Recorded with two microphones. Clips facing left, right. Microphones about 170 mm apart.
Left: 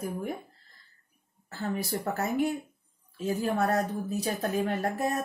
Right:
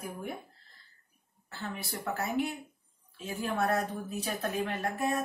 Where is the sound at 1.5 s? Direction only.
40° left (ahead or behind).